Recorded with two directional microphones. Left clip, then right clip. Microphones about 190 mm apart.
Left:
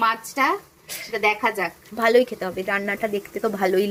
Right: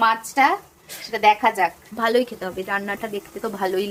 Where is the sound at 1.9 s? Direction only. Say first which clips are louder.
Left 7 dB; 5° left (ahead or behind).